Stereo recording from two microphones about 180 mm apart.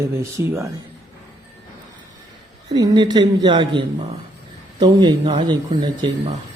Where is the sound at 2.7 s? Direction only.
25° right (ahead or behind).